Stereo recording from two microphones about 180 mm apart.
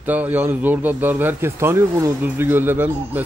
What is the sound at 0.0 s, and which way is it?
A man's voice, 10° right (ahead or behind).